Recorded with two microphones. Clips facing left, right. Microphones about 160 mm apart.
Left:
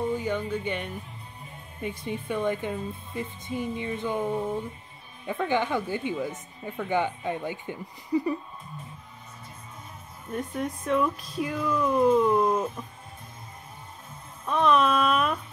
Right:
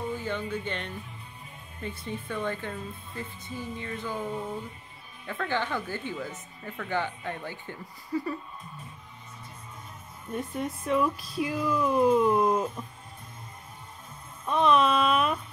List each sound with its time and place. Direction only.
0.1 s speech: 15° left (ahead or behind)
10.3 s speech: centre (ahead or behind)
14.4 s speech: centre (ahead or behind)